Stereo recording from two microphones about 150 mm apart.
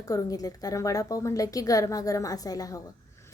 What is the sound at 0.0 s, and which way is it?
A woman's voice, 25° left (ahead or behind).